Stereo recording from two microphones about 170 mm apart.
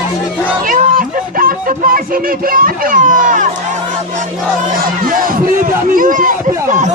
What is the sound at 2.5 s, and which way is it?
Speech, 55° right (ahead or behind).